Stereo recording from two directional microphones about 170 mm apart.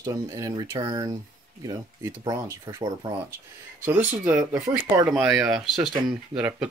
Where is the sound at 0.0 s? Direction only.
20° right (ahead or behind).